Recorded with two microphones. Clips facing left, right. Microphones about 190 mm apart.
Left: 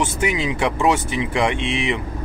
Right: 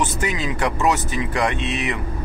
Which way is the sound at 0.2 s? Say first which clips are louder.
Left 2 dB; 10° left (ahead or behind).